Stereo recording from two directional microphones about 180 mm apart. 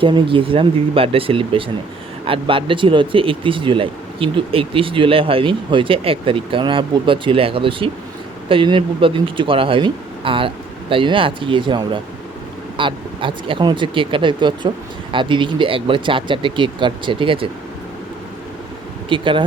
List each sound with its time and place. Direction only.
0.0 s speech: 30° right (ahead or behind)
19.0 s speech: 30° right (ahead or behind)